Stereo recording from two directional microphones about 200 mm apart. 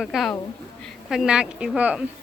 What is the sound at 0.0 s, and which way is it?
A woman's voice, centre (ahead or behind).